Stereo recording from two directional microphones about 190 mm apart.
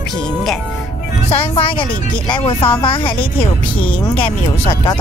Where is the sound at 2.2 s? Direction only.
25° left (ahead or behind).